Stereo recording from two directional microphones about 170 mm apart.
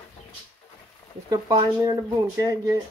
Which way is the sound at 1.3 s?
20° right (ahead or behind).